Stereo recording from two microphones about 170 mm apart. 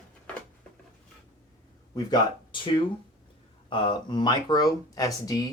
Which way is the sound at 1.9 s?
25° left (ahead or behind).